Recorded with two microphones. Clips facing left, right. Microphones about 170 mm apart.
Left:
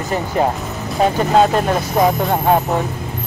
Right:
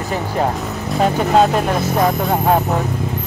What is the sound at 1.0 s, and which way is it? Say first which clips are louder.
Speech: even; centre (ahead or behind).